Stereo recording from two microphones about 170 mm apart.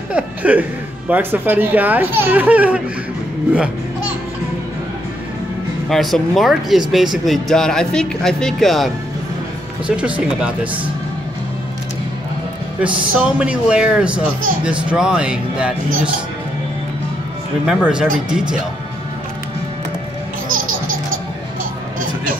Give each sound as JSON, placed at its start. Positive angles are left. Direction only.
{"t": 0.1, "sound": "speech", "side_deg": -10}
{"t": 5.9, "sound": "speech", "side_deg": 0}
{"t": 12.8, "sound": "speech", "side_deg": -5}
{"t": 17.6, "sound": "speech", "side_deg": -5}
{"t": 20.4, "sound": "music", "side_deg": -55}